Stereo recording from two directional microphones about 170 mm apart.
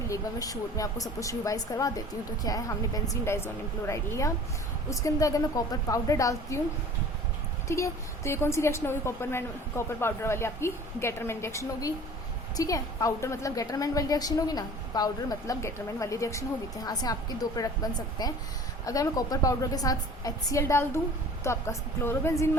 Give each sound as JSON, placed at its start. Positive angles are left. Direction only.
{"t": 0.1, "sound": "a woman's voice", "side_deg": 20}
{"t": 7.7, "sound": "a woman's voice", "side_deg": 15}